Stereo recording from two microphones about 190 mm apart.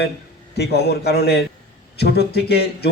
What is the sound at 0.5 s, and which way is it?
A man's voice, 60° left (ahead or behind).